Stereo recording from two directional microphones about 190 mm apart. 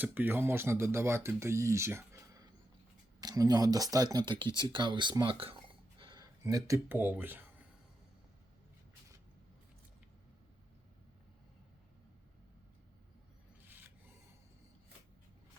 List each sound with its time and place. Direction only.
0.0 s speech: 10° right (ahead or behind)
4.7 s a sound: 25° right (ahead or behind)
6.7 s speech: 10° right (ahead or behind)